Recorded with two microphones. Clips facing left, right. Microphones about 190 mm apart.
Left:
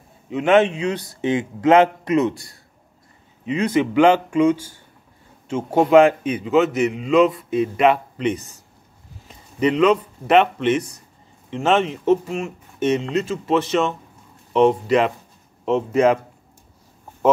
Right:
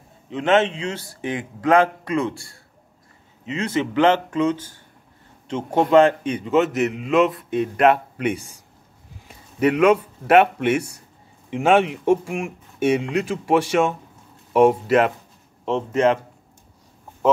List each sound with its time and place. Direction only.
0.3 s a man's voice: 10° left (ahead or behind); by 15.1 s 5° right (ahead or behind)
15.6 s speech: 5° left (ahead or behind)